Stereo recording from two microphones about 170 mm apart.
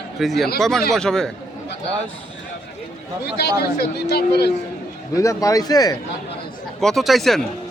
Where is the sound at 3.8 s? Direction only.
70° left (ahead or behind).